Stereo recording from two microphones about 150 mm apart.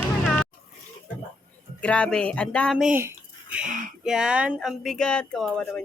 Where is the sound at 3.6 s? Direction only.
60° right (ahead or behind).